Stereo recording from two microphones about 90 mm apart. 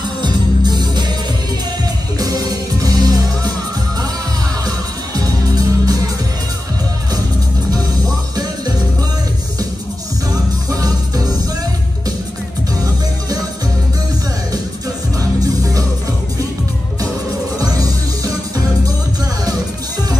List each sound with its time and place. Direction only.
0.2 s music: 50° right (ahead or behind)
2.1 s music: 45° right (ahead or behind)
4.6 s music: 45° right (ahead or behind)
10.7 s music: 45° right (ahead or behind)
15.1 s music: 40° right (ahead or behind)
17.6 s music: 40° right (ahead or behind)